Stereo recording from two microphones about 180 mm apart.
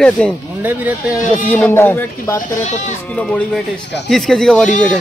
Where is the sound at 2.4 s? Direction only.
45° left (ahead or behind).